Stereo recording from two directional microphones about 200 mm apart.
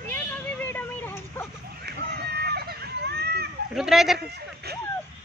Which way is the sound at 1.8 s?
55° right (ahead or behind).